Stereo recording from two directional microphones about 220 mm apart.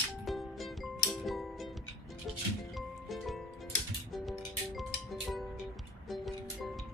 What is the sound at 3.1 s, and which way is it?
Music, centre (ahead or behind).